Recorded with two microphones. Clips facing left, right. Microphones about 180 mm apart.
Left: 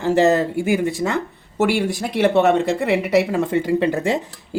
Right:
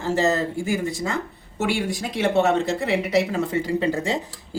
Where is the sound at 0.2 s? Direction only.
65° left (ahead or behind).